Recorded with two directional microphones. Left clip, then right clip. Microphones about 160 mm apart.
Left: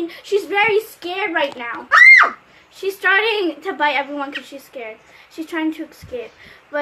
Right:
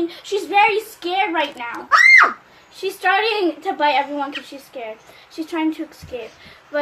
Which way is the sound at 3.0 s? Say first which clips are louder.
Left 1 dB; 20° left (ahead or behind).